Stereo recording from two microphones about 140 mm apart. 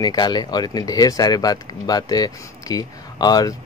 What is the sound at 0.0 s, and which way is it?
Speech, 30° left (ahead or behind).